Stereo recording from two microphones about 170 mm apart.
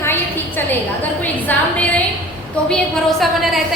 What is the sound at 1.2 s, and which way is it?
Speech, 10° left (ahead or behind).